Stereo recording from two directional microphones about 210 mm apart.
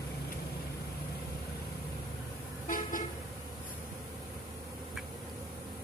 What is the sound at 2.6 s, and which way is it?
Vehicle, 40° left (ahead or behind).